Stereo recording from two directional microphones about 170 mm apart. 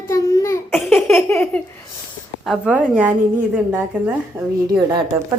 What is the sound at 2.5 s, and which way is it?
A woman's voice, 5° right (ahead or behind).